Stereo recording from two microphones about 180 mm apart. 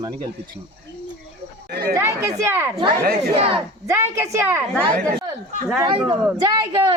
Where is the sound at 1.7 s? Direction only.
60° right (ahead or behind).